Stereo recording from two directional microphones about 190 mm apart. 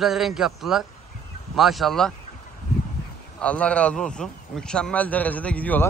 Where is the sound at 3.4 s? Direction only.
5° left (ahead or behind).